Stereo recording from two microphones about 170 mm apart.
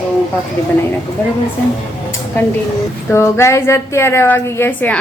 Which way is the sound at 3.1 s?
15° left (ahead or behind).